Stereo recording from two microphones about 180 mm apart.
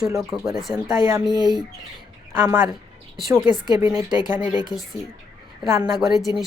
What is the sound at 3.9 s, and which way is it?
Speech, 10° right (ahead or behind).